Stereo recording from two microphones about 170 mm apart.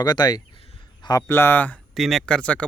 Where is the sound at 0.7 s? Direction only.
25° left (ahead or behind).